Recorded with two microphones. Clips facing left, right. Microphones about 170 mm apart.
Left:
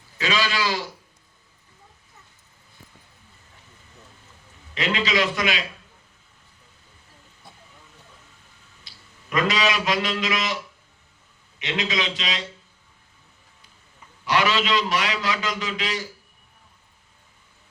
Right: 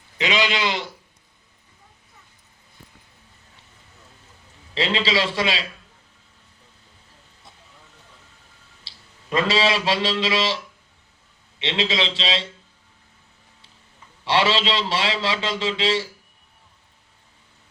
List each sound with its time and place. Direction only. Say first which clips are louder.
0.2 s a man's voice: right 2 dB; 20° right (ahead or behind)
4.7 s a man's voice: right 2 dB; 30° right (ahead or behind)
8.8 s a man's voice: left 1 dB; 30° right (ahead or behind)
11.6 s a man's voice: right 3 dB; 30° right (ahead or behind)
14.3 s a man's voice: right 1 dB; 30° right (ahead or behind)